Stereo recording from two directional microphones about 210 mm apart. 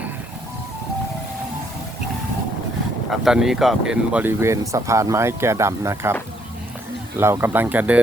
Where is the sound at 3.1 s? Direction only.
Centre (ahead or behind).